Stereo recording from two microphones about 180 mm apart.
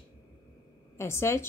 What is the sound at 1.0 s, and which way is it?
Speech, 15° left (ahead or behind).